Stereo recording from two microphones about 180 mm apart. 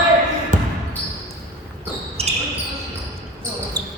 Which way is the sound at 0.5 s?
45° right (ahead or behind).